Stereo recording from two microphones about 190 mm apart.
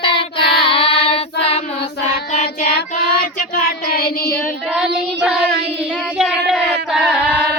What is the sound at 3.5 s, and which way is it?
Child singing, 50° left (ahead or behind).